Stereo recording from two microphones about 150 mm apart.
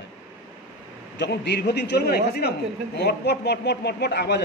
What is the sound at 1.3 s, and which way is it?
A man's voice, 90° left.